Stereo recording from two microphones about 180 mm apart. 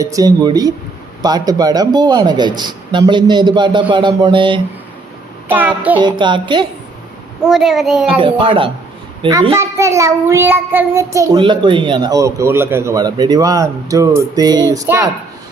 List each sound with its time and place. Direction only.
0.0 s child singing: 20° right (ahead or behind)
5.5 s child singing: 10° right (ahead or behind)
6.0 s child singing: 25° right (ahead or behind)
7.4 s a child's voice: centre (ahead or behind)
8.2 s child singing: 30° right (ahead or behind)
9.6 s child singing: 15° right (ahead or behind)